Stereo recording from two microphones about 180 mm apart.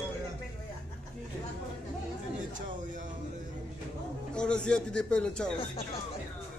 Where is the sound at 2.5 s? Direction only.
45° right (ahead or behind).